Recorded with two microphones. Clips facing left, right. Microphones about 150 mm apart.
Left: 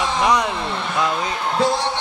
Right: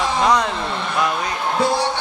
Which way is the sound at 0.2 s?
15° left (ahead or behind).